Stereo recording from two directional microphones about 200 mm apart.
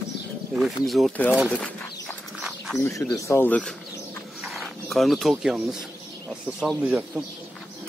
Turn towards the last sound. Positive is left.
turn(degrees=-5)  # may be behind; listen again after turning